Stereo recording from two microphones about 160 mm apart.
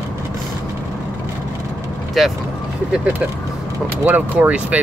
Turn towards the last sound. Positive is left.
turn(degrees=-10)  # may be behind; listen again after turning